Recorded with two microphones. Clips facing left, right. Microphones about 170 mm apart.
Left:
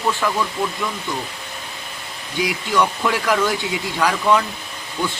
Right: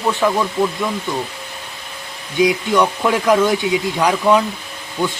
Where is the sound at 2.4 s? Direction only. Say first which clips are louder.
Right 5 dB; 20° right (ahead or behind).